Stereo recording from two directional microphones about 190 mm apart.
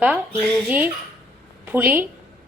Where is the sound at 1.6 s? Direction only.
10° right (ahead or behind).